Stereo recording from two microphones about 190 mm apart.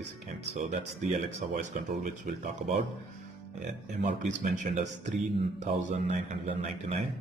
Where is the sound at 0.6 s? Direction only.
40° right (ahead or behind).